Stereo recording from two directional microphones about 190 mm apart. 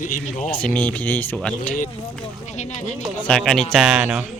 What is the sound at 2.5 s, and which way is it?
Speech, 35° left (ahead or behind).